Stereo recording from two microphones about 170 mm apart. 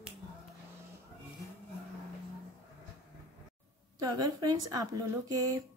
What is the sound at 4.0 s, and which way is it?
Speech, 20° right (ahead or behind).